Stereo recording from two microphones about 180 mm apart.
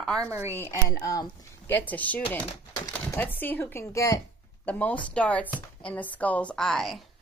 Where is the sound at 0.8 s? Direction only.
15° left (ahead or behind).